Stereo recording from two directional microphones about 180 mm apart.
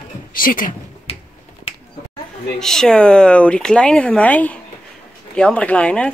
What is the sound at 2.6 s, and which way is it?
Speech, 5° left (ahead or behind).